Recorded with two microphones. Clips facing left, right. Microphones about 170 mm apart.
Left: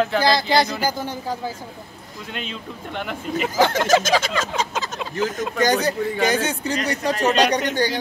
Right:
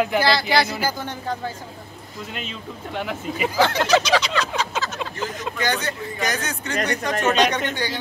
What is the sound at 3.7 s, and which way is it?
Speech, 45° left (ahead or behind).